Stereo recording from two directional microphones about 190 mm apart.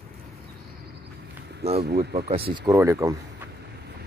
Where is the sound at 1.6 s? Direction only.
35° right (ahead or behind).